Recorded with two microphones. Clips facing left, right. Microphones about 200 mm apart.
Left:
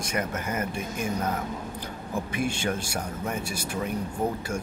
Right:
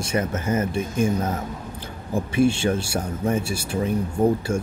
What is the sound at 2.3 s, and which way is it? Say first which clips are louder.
Speech: right 10 dB; 30° right (ahead or behind).